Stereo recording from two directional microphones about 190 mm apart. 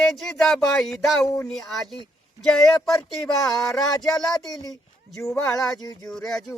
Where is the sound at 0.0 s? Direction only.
Centre (ahead or behind).